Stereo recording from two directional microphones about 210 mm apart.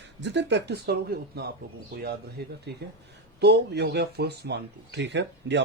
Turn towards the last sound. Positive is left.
turn(degrees=-55)  # may be behind; listen again after turning